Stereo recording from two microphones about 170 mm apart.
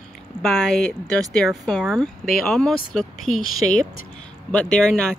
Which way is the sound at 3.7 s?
50° left (ahead or behind).